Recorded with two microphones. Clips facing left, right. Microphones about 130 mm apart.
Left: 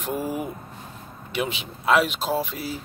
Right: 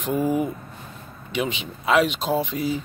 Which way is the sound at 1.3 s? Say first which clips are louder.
Right 2 dB; 5° left (ahead or behind).